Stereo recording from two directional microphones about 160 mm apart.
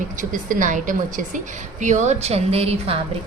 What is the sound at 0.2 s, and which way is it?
A woman's voice, 55° right (ahead or behind).